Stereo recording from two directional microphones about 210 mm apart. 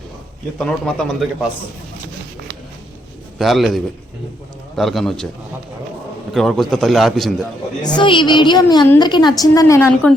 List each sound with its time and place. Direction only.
0.6 s a man's voice: 5° left (ahead or behind)
3.3 s a man's voice: centre (ahead or behind)
6.3 s a man's voice: centre (ahead or behind)
7.9 s a woman's voice: 20° left (ahead or behind)